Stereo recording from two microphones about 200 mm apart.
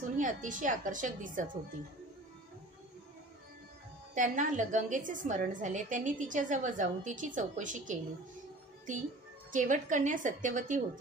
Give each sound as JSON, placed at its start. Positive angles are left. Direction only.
{"t": 0.2, "sound": "a woman's voice", "side_deg": -40}
{"t": 4.1, "sound": "a woman's voice", "side_deg": -40}